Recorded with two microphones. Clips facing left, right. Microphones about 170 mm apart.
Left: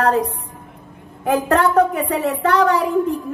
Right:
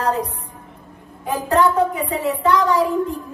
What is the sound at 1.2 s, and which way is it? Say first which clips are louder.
A woman's voice: left 1 dB; 65° left (ahead or behind).